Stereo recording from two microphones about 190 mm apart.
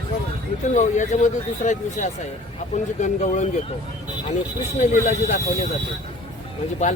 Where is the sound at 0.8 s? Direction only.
40° left (ahead or behind).